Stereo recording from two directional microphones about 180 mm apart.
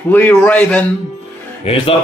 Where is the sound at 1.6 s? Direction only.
30° left (ahead or behind).